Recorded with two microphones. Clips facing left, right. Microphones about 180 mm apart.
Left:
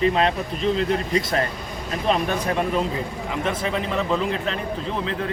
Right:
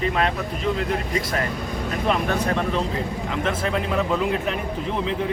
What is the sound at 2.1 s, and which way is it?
Speech, 20° left (ahead or behind).